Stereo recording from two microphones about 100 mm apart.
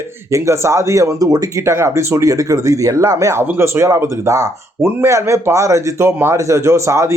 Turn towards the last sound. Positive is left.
turn(degrees=-30)  # may be behind; listen again after turning